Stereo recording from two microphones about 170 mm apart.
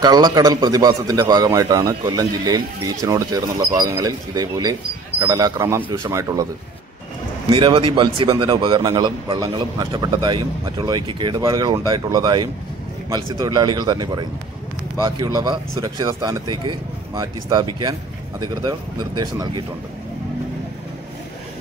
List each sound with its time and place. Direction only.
0.0 s a man's voice: 25° right (ahead or behind)
7.4 s a man's voice: 30° right (ahead or behind)